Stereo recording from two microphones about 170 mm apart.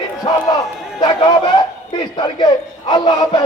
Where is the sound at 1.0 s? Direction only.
30° left (ahead or behind).